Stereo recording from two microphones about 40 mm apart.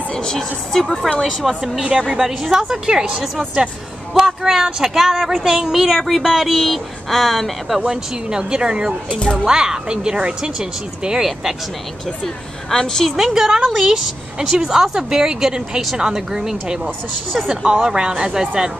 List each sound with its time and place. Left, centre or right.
0.1 s a woman's voice: centre
1.9 s speech: centre
4.1 s speech: centre
7.9 s speech: centre
9.1 s speech: left
9.5 s speech: centre
12.7 s speech: centre
13.1 s speech: centre